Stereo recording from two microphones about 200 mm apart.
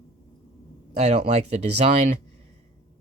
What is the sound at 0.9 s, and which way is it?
Speech, 35° right (ahead or behind).